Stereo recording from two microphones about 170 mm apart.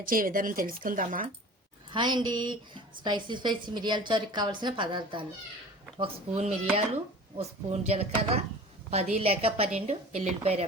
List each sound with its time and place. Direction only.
0.0 s speech: 55° right (ahead or behind)
1.9 s a woman's voice: 25° right (ahead or behind)